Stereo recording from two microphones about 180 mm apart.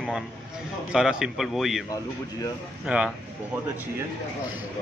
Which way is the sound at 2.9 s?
5° right (ahead or behind).